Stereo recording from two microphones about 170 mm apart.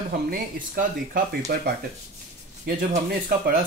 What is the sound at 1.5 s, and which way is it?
Speech, 60° right (ahead or behind).